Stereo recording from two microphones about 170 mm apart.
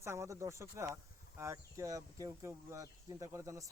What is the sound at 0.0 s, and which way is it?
Speech, 15° right (ahead or behind).